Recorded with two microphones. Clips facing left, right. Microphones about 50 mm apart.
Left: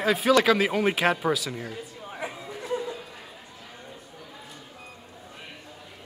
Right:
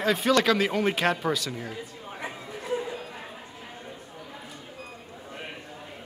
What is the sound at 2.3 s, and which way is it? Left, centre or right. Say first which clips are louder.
Chatter: right 1 dB; centre.